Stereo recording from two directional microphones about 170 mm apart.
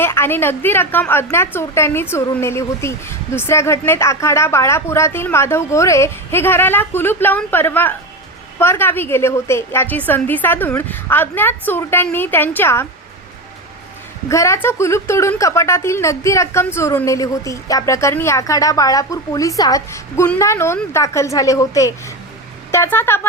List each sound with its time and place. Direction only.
0.0 s a woman's voice: 15° left (ahead or behind)
14.3 s a woman's voice: 15° left (ahead or behind)